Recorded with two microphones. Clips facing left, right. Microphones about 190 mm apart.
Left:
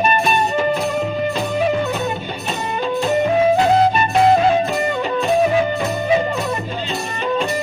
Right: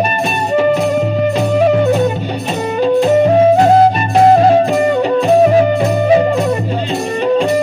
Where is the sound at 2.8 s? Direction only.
35° right (ahead or behind).